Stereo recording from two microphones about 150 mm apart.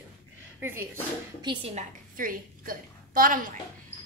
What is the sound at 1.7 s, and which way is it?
A woman's voice, 55° right (ahead or behind).